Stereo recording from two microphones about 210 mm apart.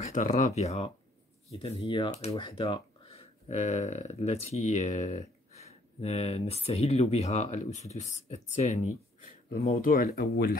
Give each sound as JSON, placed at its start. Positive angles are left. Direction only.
{"t": 0.0, "sound": "speech", "side_deg": 35}